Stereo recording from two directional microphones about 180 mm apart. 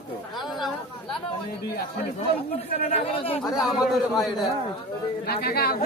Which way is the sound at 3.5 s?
Centre (ahead or behind).